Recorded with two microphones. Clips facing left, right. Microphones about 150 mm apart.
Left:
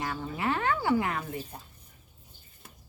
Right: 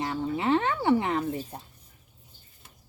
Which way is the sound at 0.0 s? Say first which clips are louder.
Right 4 dB; 25° right (ahead or behind).